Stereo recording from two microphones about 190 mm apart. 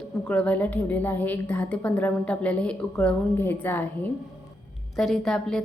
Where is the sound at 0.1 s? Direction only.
5° left (ahead or behind).